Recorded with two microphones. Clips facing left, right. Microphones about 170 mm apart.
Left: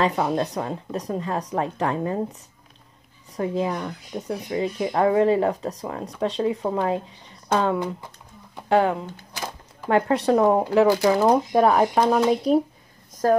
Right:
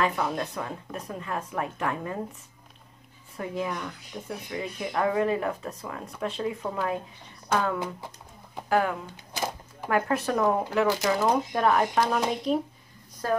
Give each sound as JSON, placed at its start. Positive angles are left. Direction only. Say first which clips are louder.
{"t": 0.0, "sound": "speech", "louder": "left 5 dB", "side_deg": 30}
{"t": 3.3, "sound": "speech", "louder": "left 6 dB", "side_deg": 35}
{"t": 4.5, "sound": "speech", "louder": "left 9 dB", "side_deg": 30}